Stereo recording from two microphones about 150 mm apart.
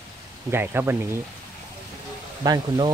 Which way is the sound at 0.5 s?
15° right (ahead or behind).